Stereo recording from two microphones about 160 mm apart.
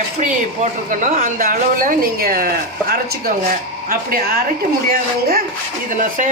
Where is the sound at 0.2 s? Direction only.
50° right (ahead or behind); by 2.5 s 65° right (ahead or behind).